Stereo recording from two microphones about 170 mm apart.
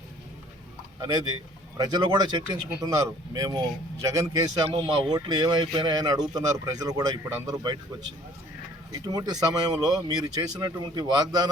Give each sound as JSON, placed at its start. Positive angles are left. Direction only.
{"t": 1.0, "sound": "speech", "side_deg": -20}
{"t": 8.9, "sound": "speech", "side_deg": -20}